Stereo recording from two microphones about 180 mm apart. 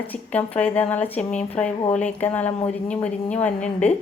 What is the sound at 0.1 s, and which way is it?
A woman's voice, 10° left (ahead or behind).